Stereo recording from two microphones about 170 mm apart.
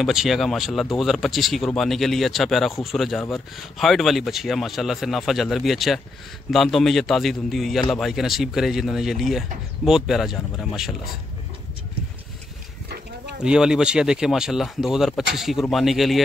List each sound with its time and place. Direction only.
0.0 s speech: centre (ahead or behind)
13.4 s speech: 5° right (ahead or behind)